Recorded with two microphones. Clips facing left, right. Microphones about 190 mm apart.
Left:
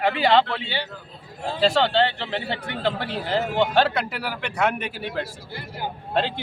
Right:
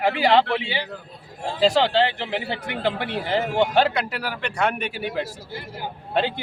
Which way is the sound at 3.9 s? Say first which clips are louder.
Even; 5° left (ahead or behind).